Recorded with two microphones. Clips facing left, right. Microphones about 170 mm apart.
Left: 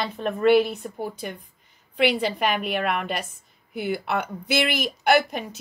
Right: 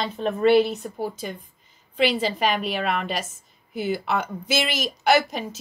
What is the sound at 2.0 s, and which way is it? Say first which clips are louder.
A woman's voice: even; 60° left (ahead or behind).